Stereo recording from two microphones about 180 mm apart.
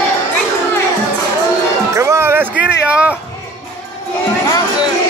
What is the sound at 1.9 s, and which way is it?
Music, 15° right (ahead or behind).